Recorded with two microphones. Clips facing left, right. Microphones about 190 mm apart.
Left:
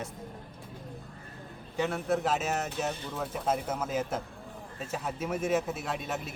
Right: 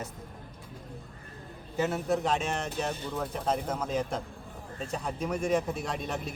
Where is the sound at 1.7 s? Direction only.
Centre (ahead or behind).